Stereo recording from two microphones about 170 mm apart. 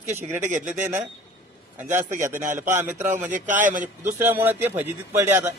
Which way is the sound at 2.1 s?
50° right (ahead or behind).